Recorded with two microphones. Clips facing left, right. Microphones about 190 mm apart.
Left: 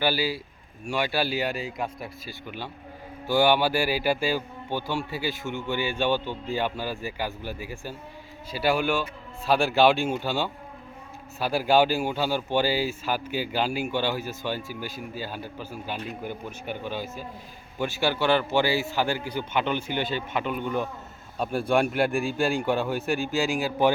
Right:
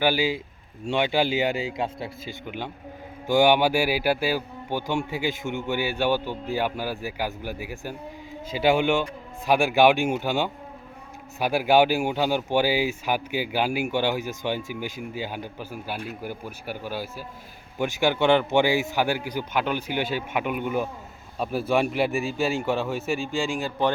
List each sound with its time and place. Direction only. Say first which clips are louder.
0.0 s speech: right 3 dB; 15° right (ahead or behind); by 23.9 s 5° left (ahead or behind)